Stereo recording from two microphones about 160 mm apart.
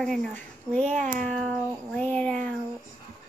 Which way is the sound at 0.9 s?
50° right (ahead or behind).